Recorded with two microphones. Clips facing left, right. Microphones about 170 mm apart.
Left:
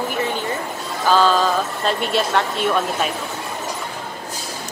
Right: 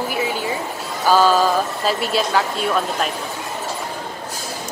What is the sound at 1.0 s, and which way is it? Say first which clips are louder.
Speech: right 1 dB; 10° right (ahead or behind).